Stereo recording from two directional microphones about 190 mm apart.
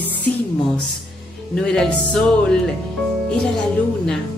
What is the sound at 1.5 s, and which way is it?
Speech, 5° left (ahead or behind).